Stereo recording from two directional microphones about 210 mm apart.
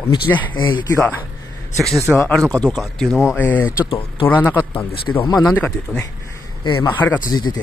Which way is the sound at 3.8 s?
25° left (ahead or behind).